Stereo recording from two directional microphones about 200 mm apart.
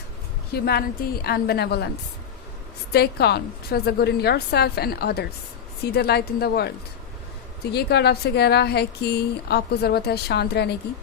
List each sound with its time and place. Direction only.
0.5 s a woman's voice: 50° left (ahead or behind)
2.9 s a woman's voice: 55° left (ahead or behind)